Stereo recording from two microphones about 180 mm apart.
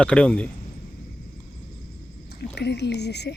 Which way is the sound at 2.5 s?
70° left (ahead or behind).